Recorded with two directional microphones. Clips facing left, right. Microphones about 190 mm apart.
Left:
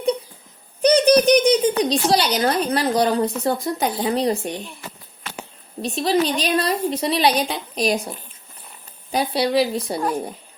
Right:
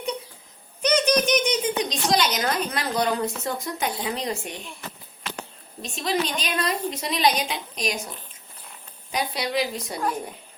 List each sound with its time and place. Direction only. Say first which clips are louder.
0.8 s a sound: left 7 dB; 35° left (ahead or behind)
1.8 s speech: left 5 dB; 35° left (ahead or behind)
5.8 s speech: left 7 dB; 35° left (ahead or behind)
9.1 s speech: left 7 dB; 30° left (ahead or behind)